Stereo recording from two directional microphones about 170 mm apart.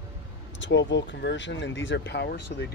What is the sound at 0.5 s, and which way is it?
Speech, 90° left.